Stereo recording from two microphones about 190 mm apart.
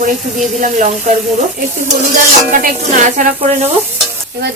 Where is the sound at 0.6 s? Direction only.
40° right (ahead or behind).